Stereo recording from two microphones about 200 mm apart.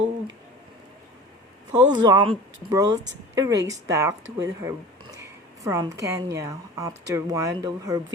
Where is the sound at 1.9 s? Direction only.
20° right (ahead or behind).